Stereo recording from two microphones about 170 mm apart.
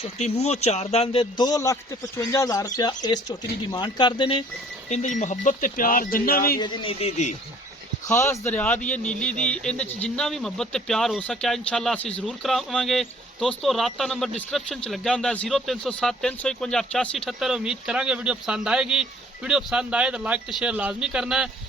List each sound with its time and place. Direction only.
0.0 s a man's voice: 40° left (ahead or behind)
4.9 s speech: 45° left (ahead or behind); by 6.6 s 60° left (ahead or behind)
6.6 s a man's voice: 25° left (ahead or behind)
8.0 s speech: 15° left (ahead or behind); by 21.5 s 5° right (ahead or behind)